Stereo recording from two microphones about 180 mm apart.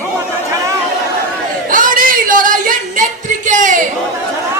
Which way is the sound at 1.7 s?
50° right (ahead or behind).